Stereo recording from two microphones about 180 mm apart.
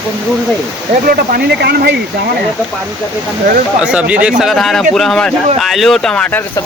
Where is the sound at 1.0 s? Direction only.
55° right (ahead or behind).